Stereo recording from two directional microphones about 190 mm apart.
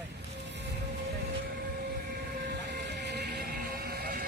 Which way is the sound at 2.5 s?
60° right (ahead or behind).